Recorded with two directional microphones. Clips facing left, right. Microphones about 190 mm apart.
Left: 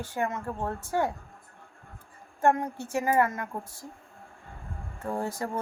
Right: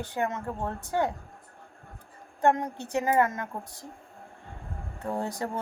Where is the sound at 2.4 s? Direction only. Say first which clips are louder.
Even; 20° right (ahead or behind).